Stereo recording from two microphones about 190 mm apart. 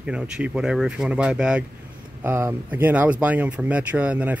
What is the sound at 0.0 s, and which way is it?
Speech, 5° right (ahead or behind).